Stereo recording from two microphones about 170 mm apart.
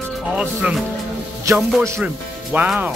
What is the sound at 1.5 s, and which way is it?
A man's voice, 20° right (ahead or behind).